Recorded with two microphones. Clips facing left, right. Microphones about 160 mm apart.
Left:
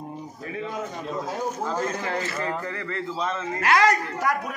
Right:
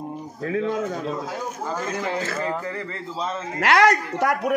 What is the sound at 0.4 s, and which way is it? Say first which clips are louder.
Speech: right 8 dB; 90° right.